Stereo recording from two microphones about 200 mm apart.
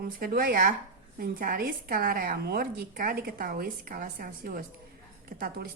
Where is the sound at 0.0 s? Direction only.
45° right (ahead or behind).